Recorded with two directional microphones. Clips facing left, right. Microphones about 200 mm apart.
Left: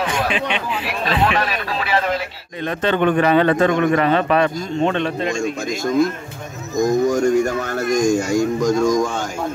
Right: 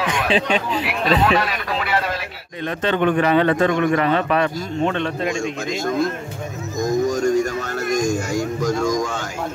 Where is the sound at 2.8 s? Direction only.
55° left (ahead or behind).